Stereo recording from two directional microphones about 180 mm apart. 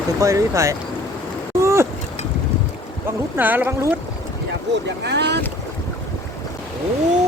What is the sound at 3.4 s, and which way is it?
Speech, 10° right (ahead or behind).